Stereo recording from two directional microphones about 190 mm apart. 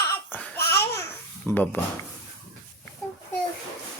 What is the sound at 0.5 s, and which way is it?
Babbling, 60° left (ahead or behind).